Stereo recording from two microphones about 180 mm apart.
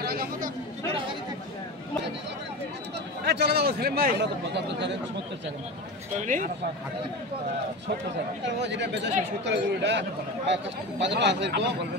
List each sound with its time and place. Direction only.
0.0 s a sound: 55° right (ahead or behind)
3.3 s a man's voice: 70° right (ahead or behind)
6.1 s speech: 45° right (ahead or behind)
8.5 s a man's voice: 75° right (ahead or behind)